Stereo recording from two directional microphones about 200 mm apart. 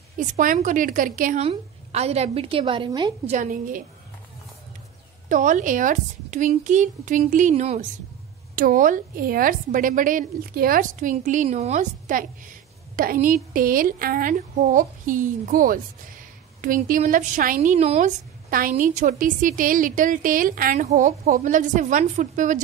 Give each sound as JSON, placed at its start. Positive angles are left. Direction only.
{"t": 0.2, "sound": "a woman's voice", "side_deg": -40}
{"t": 3.3, "sound": "a woman's voice", "side_deg": -45}
{"t": 5.3, "sound": "a woman's voice", "side_deg": -40}
{"t": 8.5, "sound": "a woman's voice", "side_deg": -45}